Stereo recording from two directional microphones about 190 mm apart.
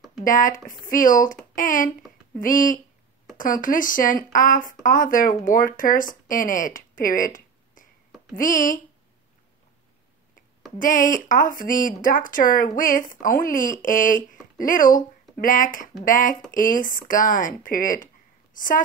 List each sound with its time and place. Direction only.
0.2 s speech: 45° left (ahead or behind)
10.8 s speech: 45° left (ahead or behind)